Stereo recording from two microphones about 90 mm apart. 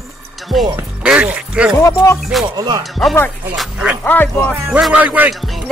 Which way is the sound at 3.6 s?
10° right (ahead or behind).